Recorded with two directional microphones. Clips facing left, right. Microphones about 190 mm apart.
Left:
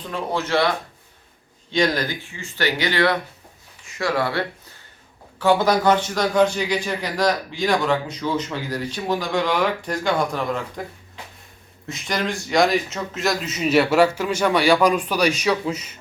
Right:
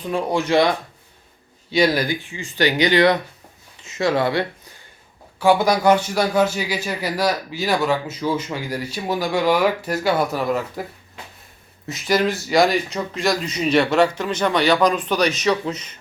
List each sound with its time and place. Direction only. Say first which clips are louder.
0.0 s a man's voice: right 4 dB; 10° right (ahead or behind)
1.7 s a man's voice: right 3 dB; 10° right (ahead or behind)
11.9 s speech: right 6 dB; 5° right (ahead or behind)